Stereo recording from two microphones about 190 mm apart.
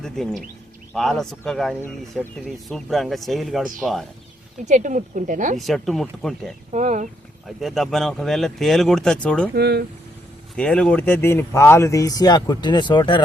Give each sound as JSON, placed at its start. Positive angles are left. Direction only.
{"t": 0.0, "sound": "speech", "side_deg": 0}
{"t": 4.6, "sound": "speech", "side_deg": -40}
{"t": 5.5, "sound": "speech", "side_deg": 0}
{"t": 6.7, "sound": "speech", "side_deg": -40}
{"t": 7.4, "sound": "speech", "side_deg": 0}
{"t": 9.6, "sound": "speech", "side_deg": -60}
{"t": 10.6, "sound": "speech", "side_deg": 5}